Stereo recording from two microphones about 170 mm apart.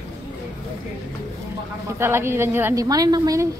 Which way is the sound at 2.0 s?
15° right (ahead or behind).